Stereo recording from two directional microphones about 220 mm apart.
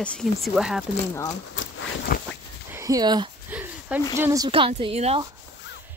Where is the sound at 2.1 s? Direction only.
40° left (ahead or behind).